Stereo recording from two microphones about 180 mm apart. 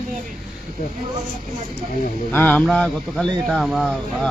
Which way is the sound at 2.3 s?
5° left (ahead or behind).